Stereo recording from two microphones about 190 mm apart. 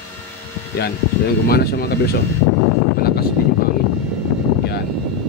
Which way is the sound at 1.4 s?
55° left (ahead or behind).